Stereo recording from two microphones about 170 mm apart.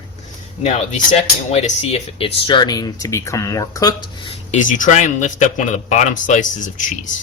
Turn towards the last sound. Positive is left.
turn(degrees=50)  # may be behind; listen again after turning